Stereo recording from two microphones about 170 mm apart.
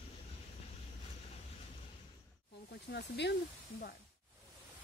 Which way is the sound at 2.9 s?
90° left.